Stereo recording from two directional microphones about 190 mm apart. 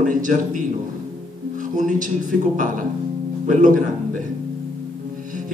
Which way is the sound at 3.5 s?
45° right (ahead or behind).